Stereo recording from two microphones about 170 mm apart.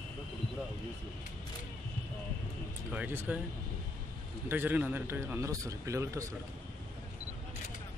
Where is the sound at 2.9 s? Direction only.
10° right (ahead or behind).